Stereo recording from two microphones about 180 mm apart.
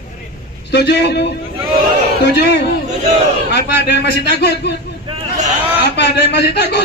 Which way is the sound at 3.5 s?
70° left (ahead or behind).